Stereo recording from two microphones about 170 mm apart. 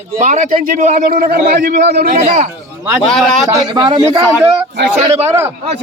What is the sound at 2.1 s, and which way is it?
Speech, 45° right (ahead or behind).